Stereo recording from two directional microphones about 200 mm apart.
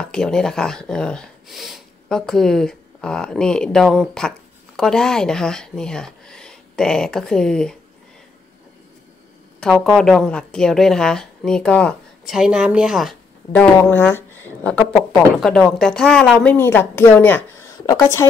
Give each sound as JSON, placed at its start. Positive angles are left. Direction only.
{"t": 0.0, "sound": "speech", "side_deg": 5}
{"t": 9.6, "sound": "speech", "side_deg": 5}
{"t": 13.6, "sound": "speech", "side_deg": 10}